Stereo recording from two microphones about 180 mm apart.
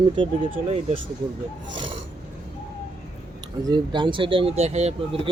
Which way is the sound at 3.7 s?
25° right (ahead or behind).